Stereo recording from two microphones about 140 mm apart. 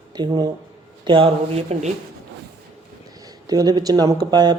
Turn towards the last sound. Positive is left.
turn(degrees=-30)  # may be behind; listen again after turning